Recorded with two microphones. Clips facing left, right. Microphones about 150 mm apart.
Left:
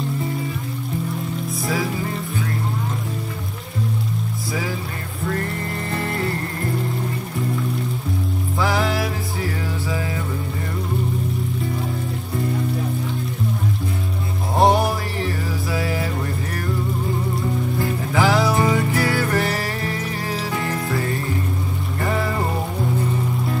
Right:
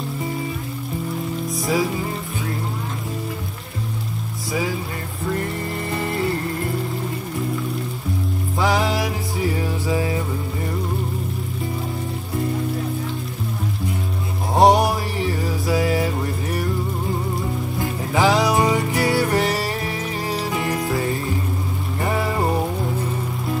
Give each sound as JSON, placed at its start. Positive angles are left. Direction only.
{"t": 8.5, "sound": "music", "side_deg": -20}
{"t": 9.8, "sound": "a sound", "side_deg": -20}
{"t": 14.6, "sound": "music", "side_deg": -15}
{"t": 18.1, "sound": "music", "side_deg": -20}